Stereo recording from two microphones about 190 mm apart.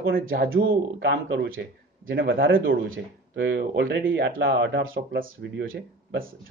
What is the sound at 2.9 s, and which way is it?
Speech, 85° right.